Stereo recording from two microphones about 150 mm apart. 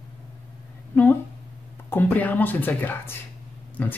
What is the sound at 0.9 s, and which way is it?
Speech, 10° left (ahead or behind).